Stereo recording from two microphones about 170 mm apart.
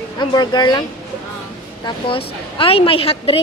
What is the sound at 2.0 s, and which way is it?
A woman's voice, 30° left (ahead or behind).